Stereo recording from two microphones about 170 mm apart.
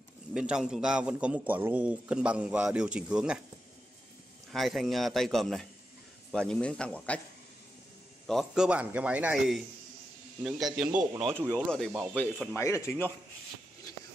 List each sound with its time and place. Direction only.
0.3 s a man's voice: 5° right (ahead or behind)
4.5 s a man's voice: centre (ahead or behind)
8.3 s a man's voice: centre (ahead or behind)
12.5 s speech: 15° left (ahead or behind)